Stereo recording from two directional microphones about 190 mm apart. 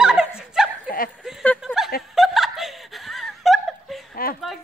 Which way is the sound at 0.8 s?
50° left (ahead or behind).